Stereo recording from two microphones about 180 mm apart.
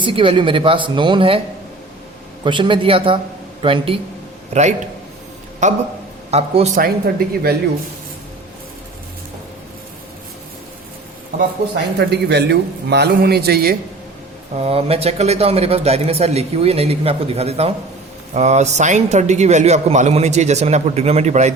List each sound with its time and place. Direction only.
0.0 s speech: 30° right (ahead or behind)
2.4 s speech: 25° right (ahead or behind)
6.7 s a man's voice: 60° right (ahead or behind)
11.9 s a man's voice: 65° right (ahead or behind)
14.5 s speech: 35° right (ahead or behind)